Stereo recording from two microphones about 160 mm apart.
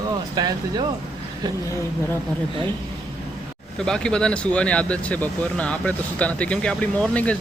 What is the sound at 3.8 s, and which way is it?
Speech, 5° left (ahead or behind).